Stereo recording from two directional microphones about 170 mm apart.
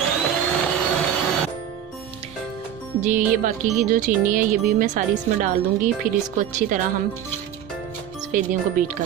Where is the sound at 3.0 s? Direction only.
50° right (ahead or behind).